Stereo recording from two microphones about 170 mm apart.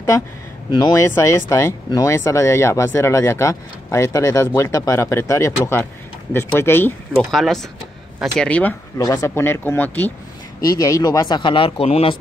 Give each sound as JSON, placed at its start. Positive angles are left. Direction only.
{"t": 0.7, "sound": "speech", "side_deg": 25}
{"t": 7.2, "sound": "speech", "side_deg": 0}
{"t": 8.9, "sound": "speech", "side_deg": 20}
{"t": 10.6, "sound": "speech", "side_deg": 20}